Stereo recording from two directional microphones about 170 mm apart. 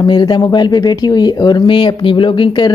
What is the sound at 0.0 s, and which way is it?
Speech, 25° left (ahead or behind).